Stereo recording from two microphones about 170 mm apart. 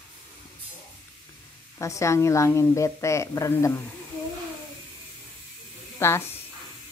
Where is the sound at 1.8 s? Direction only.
15° left (ahead or behind).